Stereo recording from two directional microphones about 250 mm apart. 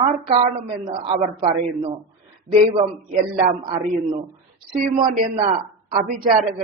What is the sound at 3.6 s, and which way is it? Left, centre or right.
Speech, right.